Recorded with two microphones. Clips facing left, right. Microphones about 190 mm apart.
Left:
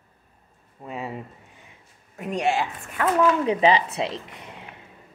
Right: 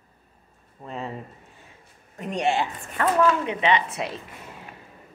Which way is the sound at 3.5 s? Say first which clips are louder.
Left 4 dB; 35° left (ahead or behind).